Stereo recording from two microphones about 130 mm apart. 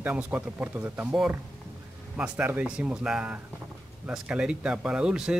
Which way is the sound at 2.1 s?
10° right (ahead or behind).